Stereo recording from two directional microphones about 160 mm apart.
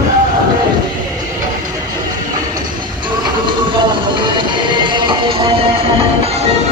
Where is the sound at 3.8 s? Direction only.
30° right (ahead or behind).